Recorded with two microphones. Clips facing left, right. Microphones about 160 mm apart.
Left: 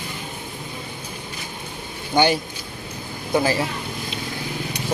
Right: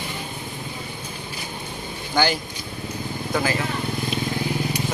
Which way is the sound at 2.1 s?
20° left (ahead or behind).